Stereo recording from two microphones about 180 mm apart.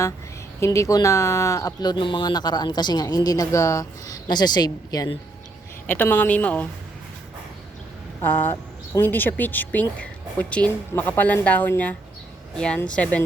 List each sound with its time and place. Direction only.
0.6 s speech: 15° left (ahead or behind)
5.9 s speech: 10° left (ahead or behind)
8.2 s speech: 10° left (ahead or behind)